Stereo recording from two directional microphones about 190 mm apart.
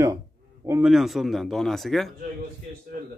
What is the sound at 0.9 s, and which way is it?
Speech, centre (ahead or behind).